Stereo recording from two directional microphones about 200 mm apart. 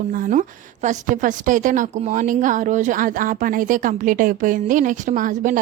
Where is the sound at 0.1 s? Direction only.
40° right (ahead or behind).